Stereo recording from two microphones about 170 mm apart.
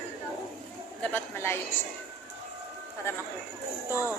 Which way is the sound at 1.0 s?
10° left (ahead or behind).